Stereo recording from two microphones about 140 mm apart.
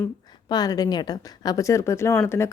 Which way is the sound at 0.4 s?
30° left (ahead or behind).